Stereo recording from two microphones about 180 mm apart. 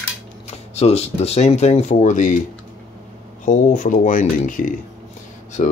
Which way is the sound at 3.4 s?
45° left (ahead or behind).